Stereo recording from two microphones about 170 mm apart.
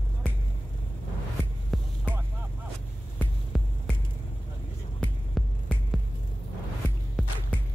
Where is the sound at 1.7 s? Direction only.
Centre (ahead or behind).